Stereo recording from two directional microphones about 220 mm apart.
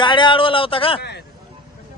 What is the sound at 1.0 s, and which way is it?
Speech, 50° left (ahead or behind).